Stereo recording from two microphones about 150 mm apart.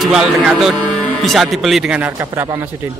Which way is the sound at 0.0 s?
5° right (ahead or behind).